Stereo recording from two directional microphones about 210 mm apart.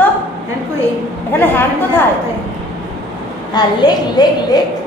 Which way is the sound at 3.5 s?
20° left (ahead or behind).